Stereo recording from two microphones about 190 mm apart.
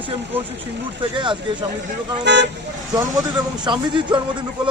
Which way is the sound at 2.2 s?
65° right (ahead or behind).